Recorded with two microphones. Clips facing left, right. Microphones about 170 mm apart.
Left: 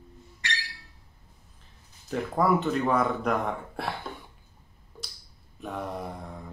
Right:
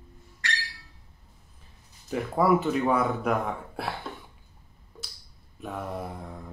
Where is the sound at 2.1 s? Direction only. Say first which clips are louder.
Right 2 dB; 5° right (ahead or behind).